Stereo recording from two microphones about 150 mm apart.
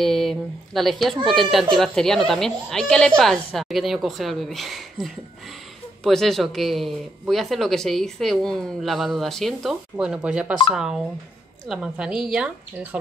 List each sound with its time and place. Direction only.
0.0 s speech: centre (ahead or behind)